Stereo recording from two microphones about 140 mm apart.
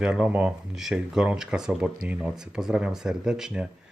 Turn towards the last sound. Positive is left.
turn(degrees=-5)  # may be behind; listen again after turning